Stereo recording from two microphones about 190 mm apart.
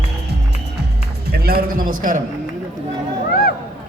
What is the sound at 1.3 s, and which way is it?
Speech, 55° right (ahead or behind).